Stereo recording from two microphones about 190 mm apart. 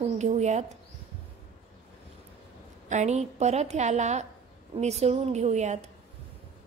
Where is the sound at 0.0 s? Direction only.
35° right (ahead or behind).